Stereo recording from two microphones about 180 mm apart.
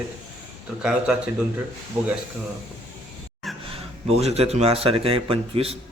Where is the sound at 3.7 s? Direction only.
35° right (ahead or behind).